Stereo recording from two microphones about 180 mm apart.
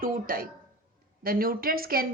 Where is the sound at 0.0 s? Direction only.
50° right (ahead or behind).